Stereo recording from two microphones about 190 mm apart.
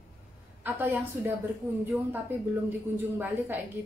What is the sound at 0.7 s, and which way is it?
Speech, 10° right (ahead or behind).